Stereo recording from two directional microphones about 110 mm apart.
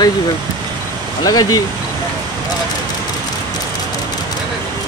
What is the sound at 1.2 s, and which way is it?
Speech, 35° left (ahead or behind).